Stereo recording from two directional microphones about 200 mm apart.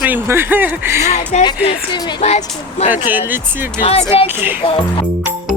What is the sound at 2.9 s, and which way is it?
Speech, 10° right (ahead or behind).